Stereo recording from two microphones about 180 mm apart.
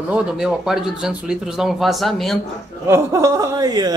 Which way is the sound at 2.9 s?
15° right (ahead or behind).